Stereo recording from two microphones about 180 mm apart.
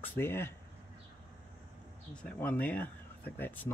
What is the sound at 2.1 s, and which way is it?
Speech, 10° left (ahead or behind).